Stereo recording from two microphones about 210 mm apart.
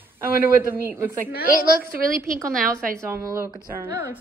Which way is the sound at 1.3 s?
45° left (ahead or behind).